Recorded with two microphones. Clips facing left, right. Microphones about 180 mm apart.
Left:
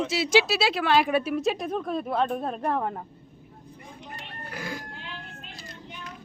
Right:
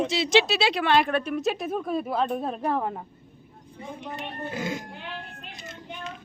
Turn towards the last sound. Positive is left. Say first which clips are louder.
# right 5 dB
turn(degrees=-25)  # may be behind; listen again after turning